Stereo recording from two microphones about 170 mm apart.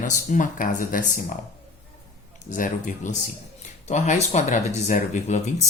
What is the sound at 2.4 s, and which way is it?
Speech, 50° left (ahead or behind).